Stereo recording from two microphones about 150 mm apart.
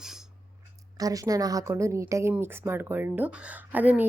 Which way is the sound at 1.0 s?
25° right (ahead or behind).